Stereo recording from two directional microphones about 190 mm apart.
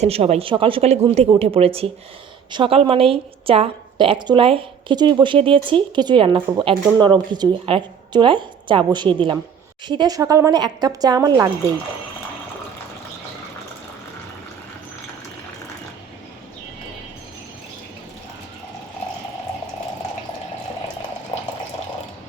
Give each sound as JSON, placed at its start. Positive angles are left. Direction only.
{"t": 0.0, "sound": "a woman's voice", "side_deg": -35}
{"t": 21.3, "sound": "water", "side_deg": 30}